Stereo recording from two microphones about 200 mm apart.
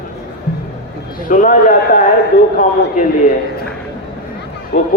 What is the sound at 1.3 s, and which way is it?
Speech, 40° left (ahead or behind).